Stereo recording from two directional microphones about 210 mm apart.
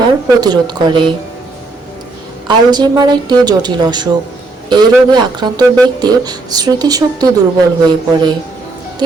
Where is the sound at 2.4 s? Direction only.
20° right (ahead or behind).